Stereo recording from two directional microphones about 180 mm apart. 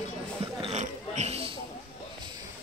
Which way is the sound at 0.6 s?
35° right (ahead or behind).